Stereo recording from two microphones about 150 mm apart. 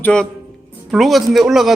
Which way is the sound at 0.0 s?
5° left (ahead or behind).